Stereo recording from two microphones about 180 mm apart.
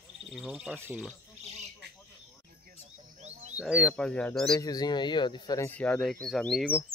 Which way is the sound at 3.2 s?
40° right (ahead or behind).